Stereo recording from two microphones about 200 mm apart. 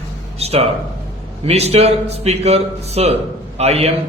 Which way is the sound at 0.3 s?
30° right (ahead or behind).